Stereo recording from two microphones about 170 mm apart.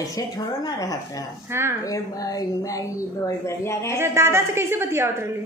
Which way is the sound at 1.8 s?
20° left (ahead or behind).